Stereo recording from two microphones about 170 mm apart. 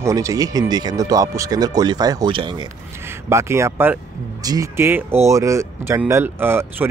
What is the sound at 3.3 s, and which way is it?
Speech, 15° right (ahead or behind).